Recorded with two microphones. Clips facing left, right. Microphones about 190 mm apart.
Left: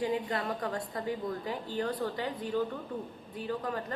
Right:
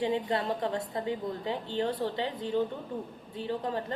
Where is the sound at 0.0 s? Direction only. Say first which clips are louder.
Right 2 dB; 25° right (ahead or behind).